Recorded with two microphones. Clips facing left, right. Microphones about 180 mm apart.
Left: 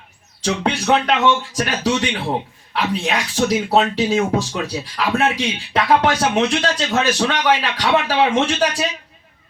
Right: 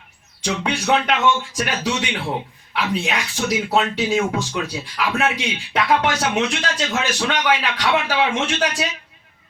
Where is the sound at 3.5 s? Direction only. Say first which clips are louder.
Left 1 dB; 35° left (ahead or behind).